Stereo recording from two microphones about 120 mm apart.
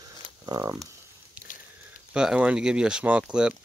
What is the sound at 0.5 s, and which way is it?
Speech, 30° right (ahead or behind).